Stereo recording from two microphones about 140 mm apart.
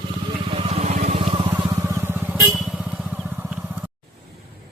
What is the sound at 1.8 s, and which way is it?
Vehicle, 15° right (ahead or behind).